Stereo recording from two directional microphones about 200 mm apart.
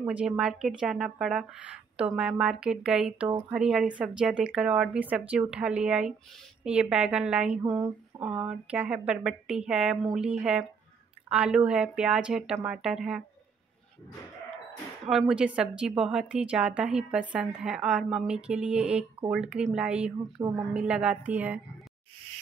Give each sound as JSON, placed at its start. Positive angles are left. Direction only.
{"t": 0.0, "sound": "a woman's voice", "side_deg": -5}
{"t": 7.6, "sound": "speech", "side_deg": -20}
{"t": 8.2, "sound": "a woman's voice", "side_deg": -5}
{"t": 15.0, "sound": "a woman's voice", "side_deg": 0}